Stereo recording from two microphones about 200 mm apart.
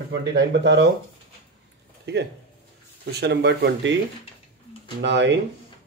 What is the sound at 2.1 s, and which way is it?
Speech, 60° right (ahead or behind).